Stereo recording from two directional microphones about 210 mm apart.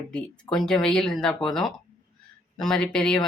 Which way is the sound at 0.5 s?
Centre (ahead or behind).